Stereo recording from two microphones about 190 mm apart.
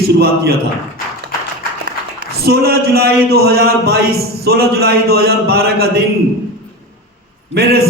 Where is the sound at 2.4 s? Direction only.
55° right (ahead or behind).